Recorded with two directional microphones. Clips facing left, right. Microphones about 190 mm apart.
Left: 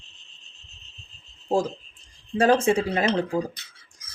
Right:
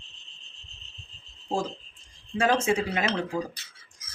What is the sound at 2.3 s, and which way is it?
Speech, 35° left (ahead or behind).